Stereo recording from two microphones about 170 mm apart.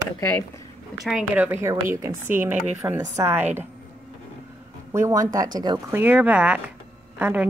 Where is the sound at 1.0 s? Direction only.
5° right (ahead or behind).